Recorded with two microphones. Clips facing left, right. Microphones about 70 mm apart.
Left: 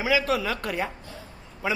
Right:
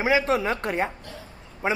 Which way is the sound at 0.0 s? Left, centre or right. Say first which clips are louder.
Right 2 dB; right.